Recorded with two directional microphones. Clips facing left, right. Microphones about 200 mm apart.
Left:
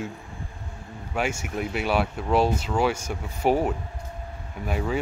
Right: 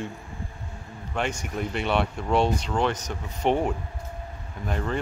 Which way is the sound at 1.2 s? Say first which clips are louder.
Left 1 dB; 5° left (ahead or behind).